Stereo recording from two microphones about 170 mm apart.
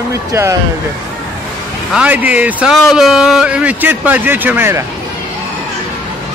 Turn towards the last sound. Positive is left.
turn(degrees=-15)  # may be behind; listen again after turning